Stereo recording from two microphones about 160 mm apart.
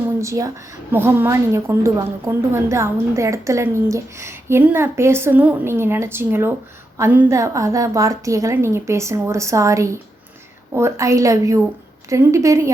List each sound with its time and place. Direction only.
0.2 s a woman's voice: 20° right (ahead or behind)